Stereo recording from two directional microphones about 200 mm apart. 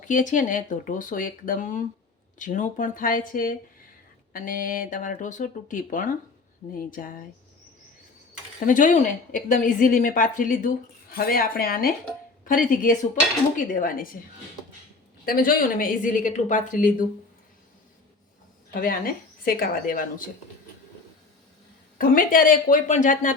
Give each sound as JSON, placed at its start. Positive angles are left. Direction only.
{"t": 0.0, "sound": "a woman's voice", "side_deg": 40}
{"t": 8.6, "sound": "a woman's voice", "side_deg": 40}
{"t": 15.2, "sound": "a woman's voice", "side_deg": 45}
{"t": 18.8, "sound": "speech", "side_deg": 45}
{"t": 21.9, "sound": "speech", "side_deg": 45}